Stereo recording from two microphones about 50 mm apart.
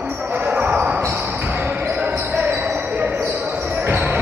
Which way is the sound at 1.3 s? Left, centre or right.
Right.